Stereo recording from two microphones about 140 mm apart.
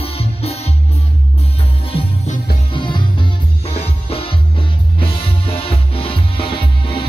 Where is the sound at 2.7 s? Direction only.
35° left (ahead or behind).